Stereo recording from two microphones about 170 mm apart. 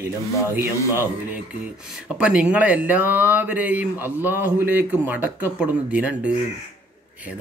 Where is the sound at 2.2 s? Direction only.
5° right (ahead or behind).